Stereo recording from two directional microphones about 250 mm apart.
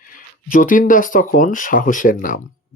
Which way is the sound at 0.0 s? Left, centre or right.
Left.